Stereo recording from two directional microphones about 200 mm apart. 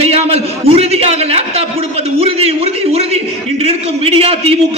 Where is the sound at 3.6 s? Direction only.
30° right (ahead or behind).